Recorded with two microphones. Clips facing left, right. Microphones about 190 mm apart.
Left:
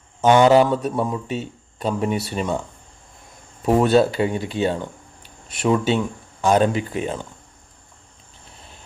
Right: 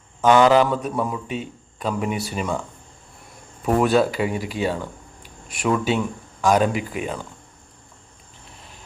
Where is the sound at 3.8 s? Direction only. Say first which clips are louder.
Left 2 dB; 25° left (ahead or behind).